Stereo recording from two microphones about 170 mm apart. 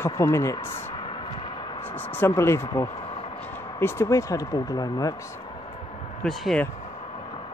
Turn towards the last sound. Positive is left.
turn(degrees=5)  # may be behind; listen again after turning